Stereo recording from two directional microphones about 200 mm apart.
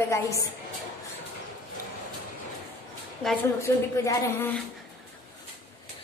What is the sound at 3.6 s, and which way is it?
Speech, 15° left (ahead or behind).